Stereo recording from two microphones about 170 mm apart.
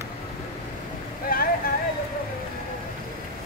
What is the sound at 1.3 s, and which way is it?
Boat, 55° left (ahead or behind).